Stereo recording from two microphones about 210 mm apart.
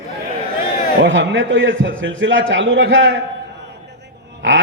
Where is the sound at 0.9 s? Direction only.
60° right (ahead or behind).